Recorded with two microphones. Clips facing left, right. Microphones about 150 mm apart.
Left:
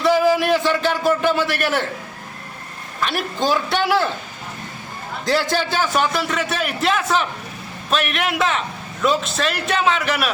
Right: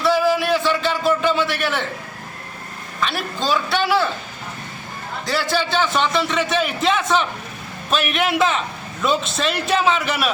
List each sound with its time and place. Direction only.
0.0 s a sound: 15° left (ahead or behind)
3.0 s a man's voice: 15° left (ahead or behind)
5.3 s a man's voice: 15° left (ahead or behind); by 10.3 s centre (ahead or behind)